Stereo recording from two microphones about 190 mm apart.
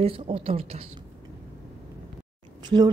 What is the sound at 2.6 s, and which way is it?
Speech, 25° right (ahead or behind).